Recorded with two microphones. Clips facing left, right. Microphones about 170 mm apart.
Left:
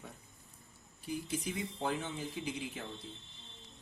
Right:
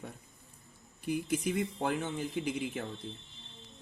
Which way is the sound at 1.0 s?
60° right (ahead or behind).